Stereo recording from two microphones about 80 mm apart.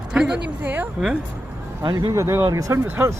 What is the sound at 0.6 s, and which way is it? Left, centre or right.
Speech, right.